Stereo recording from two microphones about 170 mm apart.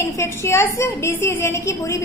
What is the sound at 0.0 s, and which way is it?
A woman's voice, 15° left (ahead or behind).